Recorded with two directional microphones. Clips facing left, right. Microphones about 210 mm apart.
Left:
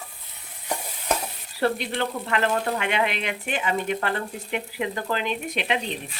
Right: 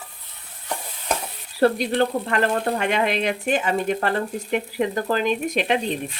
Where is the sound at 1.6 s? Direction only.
40° right (ahead or behind).